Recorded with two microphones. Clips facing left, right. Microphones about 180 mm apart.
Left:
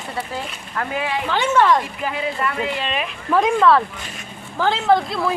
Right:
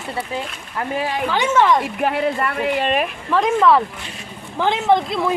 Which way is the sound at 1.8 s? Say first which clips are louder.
Right 6 dB; 65° right (ahead or behind).